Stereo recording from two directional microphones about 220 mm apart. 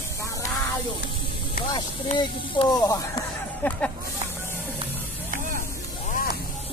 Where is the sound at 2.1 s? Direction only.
20° left (ahead or behind).